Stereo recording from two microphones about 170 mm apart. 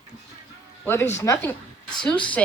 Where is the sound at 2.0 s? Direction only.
10° left (ahead or behind).